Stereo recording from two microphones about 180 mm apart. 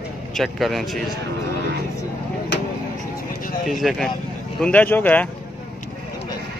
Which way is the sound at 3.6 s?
Centre (ahead or behind).